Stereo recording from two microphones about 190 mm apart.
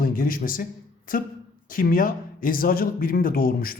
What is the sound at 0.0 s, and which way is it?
A man's voice, 50° left (ahead or behind).